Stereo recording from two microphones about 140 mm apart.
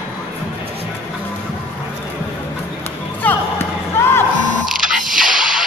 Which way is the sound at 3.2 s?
15° left (ahead or behind).